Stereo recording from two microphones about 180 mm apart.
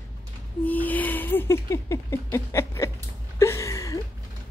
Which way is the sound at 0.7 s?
10° left (ahead or behind).